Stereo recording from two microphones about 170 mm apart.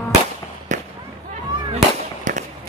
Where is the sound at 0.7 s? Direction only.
45° right (ahead or behind).